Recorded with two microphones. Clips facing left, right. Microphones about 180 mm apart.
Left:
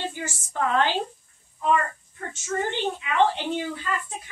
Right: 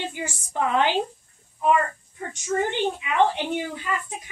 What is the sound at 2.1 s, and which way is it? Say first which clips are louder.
A woman's voice: right 3 dB; 15° right (ahead or behind).